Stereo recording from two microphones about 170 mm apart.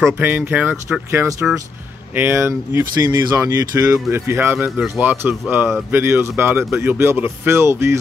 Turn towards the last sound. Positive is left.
turn(degrees=-15)  # may be behind; listen again after turning